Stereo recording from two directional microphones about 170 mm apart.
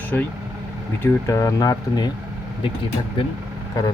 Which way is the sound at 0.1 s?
10° left (ahead or behind).